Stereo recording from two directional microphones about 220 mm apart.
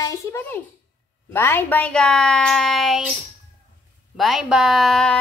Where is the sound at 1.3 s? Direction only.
10° left (ahead or behind).